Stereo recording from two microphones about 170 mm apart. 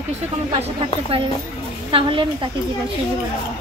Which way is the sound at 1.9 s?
30° right (ahead or behind).